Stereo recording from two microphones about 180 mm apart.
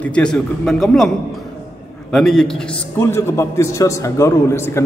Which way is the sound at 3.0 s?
15° left (ahead or behind).